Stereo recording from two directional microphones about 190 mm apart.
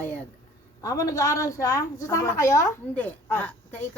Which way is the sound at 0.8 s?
15° left (ahead or behind).